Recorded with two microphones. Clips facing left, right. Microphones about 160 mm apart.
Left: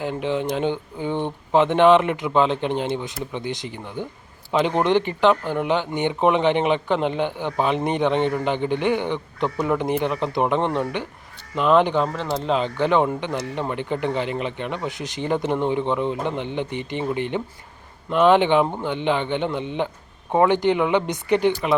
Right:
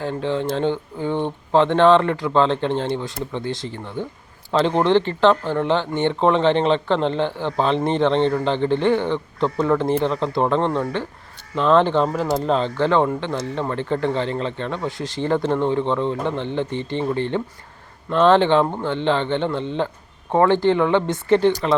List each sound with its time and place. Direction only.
0.0 s speech: 15° left (ahead or behind)
12.0 s speech: 5° right (ahead or behind)
12.5 s speech: 10° left (ahead or behind)